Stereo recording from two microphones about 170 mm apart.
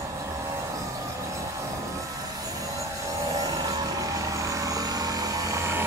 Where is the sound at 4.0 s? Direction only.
20° right (ahead or behind).